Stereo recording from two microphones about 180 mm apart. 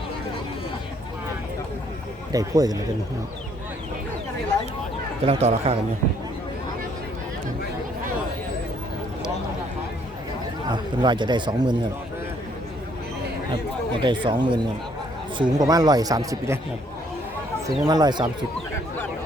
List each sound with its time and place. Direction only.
2.3 s speech: 20° right (ahead or behind)
5.2 s speech: 35° right (ahead or behind)
10.7 s speech: 25° right (ahead or behind)
14.0 s speech: 25° right (ahead or behind)
17.8 s speech: 20° right (ahead or behind)